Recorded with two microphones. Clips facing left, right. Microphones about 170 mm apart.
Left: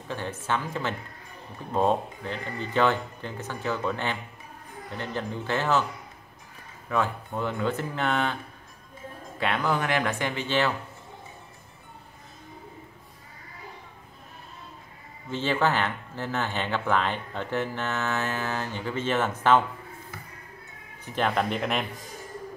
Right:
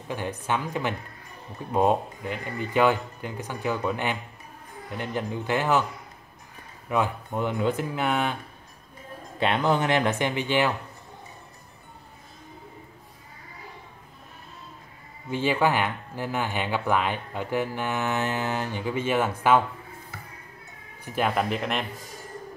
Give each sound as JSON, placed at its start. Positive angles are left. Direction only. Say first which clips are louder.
{"t": 0.1, "sound": "speech", "louder": "right 1 dB", "side_deg": -15}
{"t": 6.9, "sound": "speech", "louder": "right 1 dB", "side_deg": -15}
{"t": 9.4, "sound": "speech", "louder": "right 3 dB", "side_deg": -25}
{"t": 15.2, "sound": "speech", "louder": "right 2 dB", "side_deg": -10}
{"t": 21.0, "sound": "speech", "louder": "right 1 dB", "side_deg": -10}